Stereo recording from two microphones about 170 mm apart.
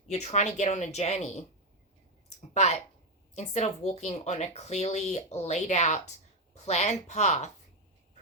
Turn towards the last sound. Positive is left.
turn(degrees=40)  # may be behind; listen again after turning